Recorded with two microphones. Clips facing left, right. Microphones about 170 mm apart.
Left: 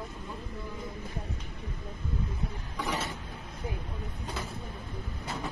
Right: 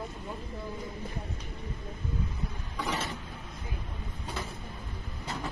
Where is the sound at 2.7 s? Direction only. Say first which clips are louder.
Even; 15° left (ahead or behind).